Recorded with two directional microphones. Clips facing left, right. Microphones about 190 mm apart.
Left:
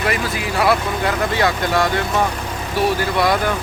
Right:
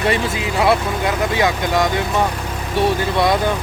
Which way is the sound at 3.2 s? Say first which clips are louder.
Right 2 dB; 20° right (ahead or behind).